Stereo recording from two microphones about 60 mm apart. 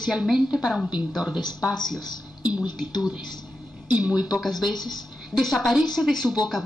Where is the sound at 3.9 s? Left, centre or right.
Centre.